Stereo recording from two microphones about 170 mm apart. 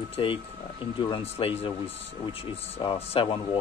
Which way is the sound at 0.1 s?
30° left (ahead or behind).